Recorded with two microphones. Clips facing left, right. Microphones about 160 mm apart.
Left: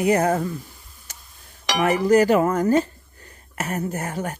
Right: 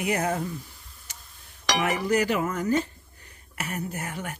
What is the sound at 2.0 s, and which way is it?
Speech, 45° left (ahead or behind).